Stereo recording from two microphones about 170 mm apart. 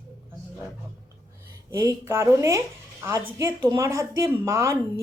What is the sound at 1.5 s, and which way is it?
A woman's voice, 20° right (ahead or behind).